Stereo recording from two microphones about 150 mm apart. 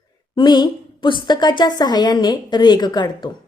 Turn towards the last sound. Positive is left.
turn(degrees=30)  # may be behind; listen again after turning